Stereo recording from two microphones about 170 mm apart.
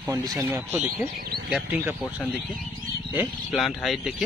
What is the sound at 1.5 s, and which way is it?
Speech, 10° right (ahead or behind).